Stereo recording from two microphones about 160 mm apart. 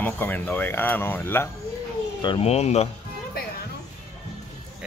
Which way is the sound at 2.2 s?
40° left (ahead or behind).